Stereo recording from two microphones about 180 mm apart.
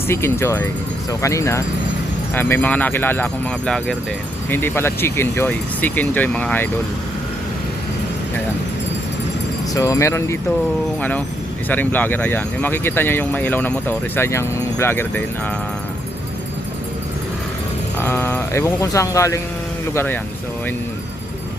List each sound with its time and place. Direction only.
0.1 s speech: 15° left (ahead or behind)
9.7 s speech: 20° left (ahead or behind)
11.7 s speech: 10° left (ahead or behind)
18.0 s speech: 10° left (ahead or behind)